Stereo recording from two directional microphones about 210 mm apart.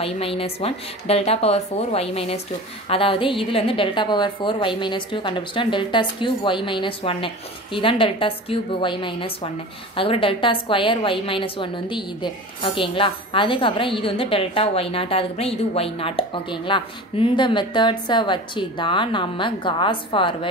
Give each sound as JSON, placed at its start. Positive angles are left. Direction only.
{"t": 0.0, "sound": "a woman's voice", "side_deg": 25}